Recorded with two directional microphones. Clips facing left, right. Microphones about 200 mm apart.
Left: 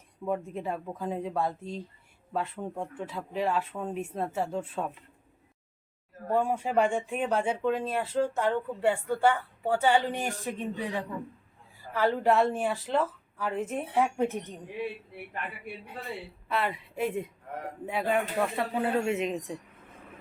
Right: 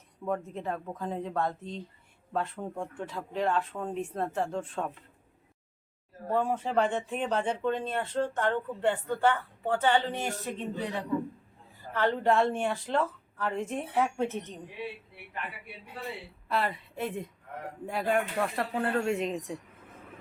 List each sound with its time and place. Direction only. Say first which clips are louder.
0.3 s speech: left 1 dB; 10° left (ahead or behind)
6.3 s speech: left 1 dB; 10° left (ahead or behind)
16.5 s speech: even; 5° left (ahead or behind)